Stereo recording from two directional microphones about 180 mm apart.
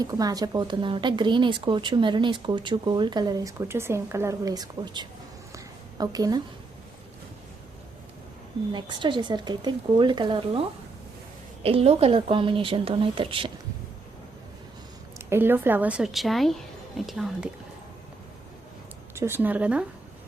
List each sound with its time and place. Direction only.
0.0 s speech: 20° right (ahead or behind)
8.7 s speech: 25° right (ahead or behind)
11.6 s speech: 35° right (ahead or behind)
15.3 s a woman's voice: 10° right (ahead or behind)
19.1 s speech: 15° right (ahead or behind)